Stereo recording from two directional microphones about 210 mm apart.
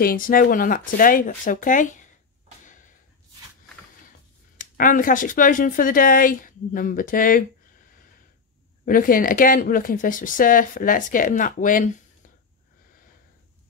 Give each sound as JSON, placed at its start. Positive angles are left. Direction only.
{"t": 0.0, "sound": "speech", "side_deg": 40}
{"t": 2.6, "sound": "a sound", "side_deg": 35}
{"t": 4.6, "sound": "speech", "side_deg": 40}
{"t": 8.8, "sound": "speech", "side_deg": 40}